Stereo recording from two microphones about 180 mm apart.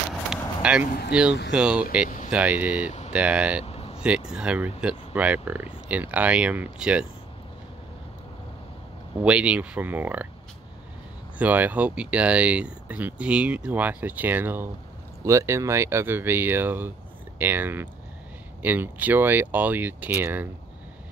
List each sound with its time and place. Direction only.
0.6 s a sound: 5° right (ahead or behind)
1.1 s speech: 5° right (ahead or behind)
3.6 s vehicle: 35° left (ahead or behind)
4.3 s speech: 5° right (ahead or behind)
9.2 s speech: 5° right (ahead or behind)
11.3 s speech: 10° right (ahead or behind)